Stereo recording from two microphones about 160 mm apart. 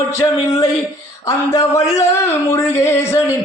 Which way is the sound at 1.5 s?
15° left (ahead or behind).